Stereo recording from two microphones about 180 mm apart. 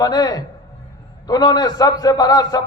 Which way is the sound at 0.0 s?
20° left (ahead or behind).